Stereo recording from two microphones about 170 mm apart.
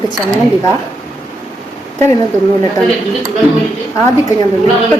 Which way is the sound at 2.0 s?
15° left (ahead or behind).